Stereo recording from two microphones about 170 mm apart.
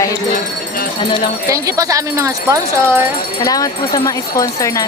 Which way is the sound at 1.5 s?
20° right (ahead or behind).